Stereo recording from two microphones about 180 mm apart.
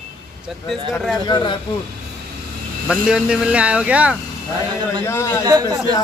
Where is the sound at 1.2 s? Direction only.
25° left (ahead or behind).